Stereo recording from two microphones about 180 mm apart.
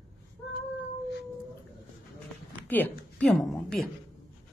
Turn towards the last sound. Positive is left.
turn(degrees=5)  # may be behind; listen again after turning